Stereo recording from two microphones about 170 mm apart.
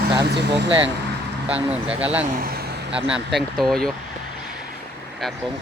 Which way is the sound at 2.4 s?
65° right (ahead or behind).